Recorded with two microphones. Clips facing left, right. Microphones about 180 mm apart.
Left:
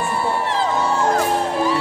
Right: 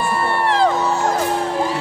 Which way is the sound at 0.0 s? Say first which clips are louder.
Right 2 dB; 70° right (ahead or behind).